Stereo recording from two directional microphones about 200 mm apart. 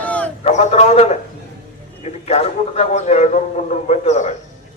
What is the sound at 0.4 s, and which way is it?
A man's voice, 35° left (ahead or behind).